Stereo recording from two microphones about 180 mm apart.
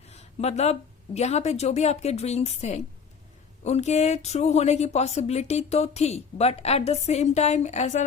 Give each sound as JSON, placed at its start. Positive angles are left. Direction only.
{"t": 0.1, "sound": "speech", "side_deg": 35}